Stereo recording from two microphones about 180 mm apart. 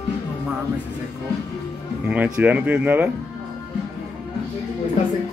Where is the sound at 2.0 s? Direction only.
10° right (ahead or behind).